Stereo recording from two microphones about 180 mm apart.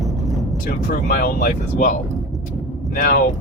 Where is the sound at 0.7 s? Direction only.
50° left (ahead or behind).